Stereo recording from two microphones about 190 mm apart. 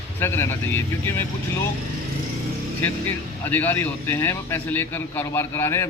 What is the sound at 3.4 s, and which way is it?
A man's voice, 10° left (ahead or behind).